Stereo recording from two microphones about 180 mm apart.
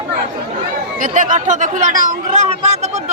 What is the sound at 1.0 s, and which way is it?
Speech, 45° right (ahead or behind).